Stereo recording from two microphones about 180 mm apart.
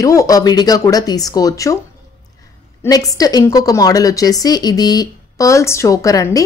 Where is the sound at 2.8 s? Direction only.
20° left (ahead or behind).